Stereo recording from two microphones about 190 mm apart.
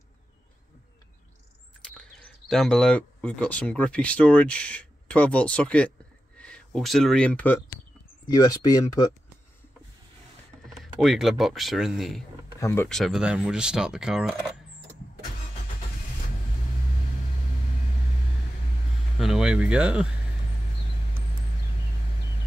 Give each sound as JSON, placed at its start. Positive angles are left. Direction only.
{"t": 2.0, "sound": "speech", "side_deg": 5}
{"t": 8.3, "sound": "speech", "side_deg": 20}
{"t": 10.7, "sound": "speech", "side_deg": 0}
{"t": 12.5, "sound": "speech", "side_deg": 15}
{"t": 19.1, "sound": "speech", "side_deg": 0}